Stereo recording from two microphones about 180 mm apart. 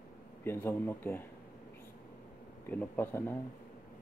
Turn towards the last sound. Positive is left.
turn(degrees=10)  # may be behind; listen again after turning